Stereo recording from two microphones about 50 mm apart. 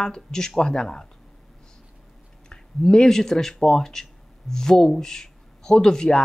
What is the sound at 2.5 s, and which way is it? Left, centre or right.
Speech, centre.